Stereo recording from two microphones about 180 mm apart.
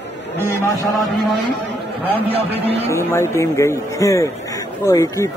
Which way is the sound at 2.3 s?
35° right (ahead or behind).